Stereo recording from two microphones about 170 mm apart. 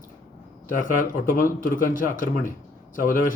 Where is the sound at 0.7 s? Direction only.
50° left (ahead or behind).